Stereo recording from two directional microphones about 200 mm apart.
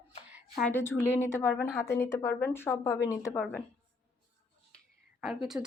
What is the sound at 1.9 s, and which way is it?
Speech, 15° left (ahead or behind).